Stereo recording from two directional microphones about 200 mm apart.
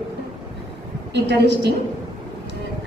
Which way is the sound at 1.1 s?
60° right (ahead or behind).